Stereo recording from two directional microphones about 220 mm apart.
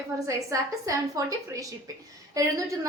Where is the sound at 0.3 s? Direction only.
15° right (ahead or behind).